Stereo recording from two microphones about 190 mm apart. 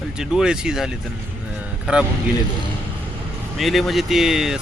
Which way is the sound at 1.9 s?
5° right (ahead or behind).